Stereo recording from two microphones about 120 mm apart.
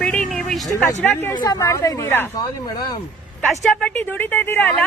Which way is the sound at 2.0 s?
15° left (ahead or behind).